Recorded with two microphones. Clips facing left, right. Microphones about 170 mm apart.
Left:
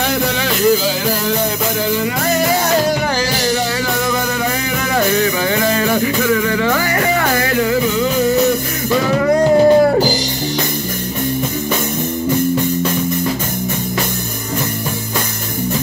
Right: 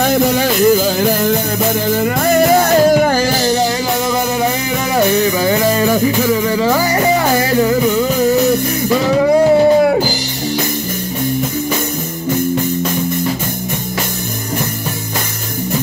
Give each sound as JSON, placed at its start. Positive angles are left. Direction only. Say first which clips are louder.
{"t": 0.0, "sound": "music", "louder": "right 5 dB", "side_deg": -45}
{"t": 2.4, "sound": "music", "louder": "right 6 dB", "side_deg": -50}
{"t": 5.4, "sound": "music", "louder": "right 3 dB", "side_deg": -35}
{"t": 9.2, "sound": "music", "louder": "right 1 dB", "side_deg": -10}